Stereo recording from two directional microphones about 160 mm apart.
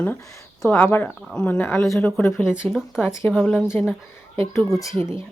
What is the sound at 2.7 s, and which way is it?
Speech, centre (ahead or behind).